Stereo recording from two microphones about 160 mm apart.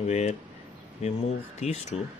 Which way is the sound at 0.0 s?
45° left (ahead or behind).